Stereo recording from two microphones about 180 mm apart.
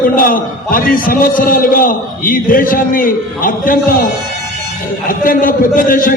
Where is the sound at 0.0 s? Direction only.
50° left (ahead or behind).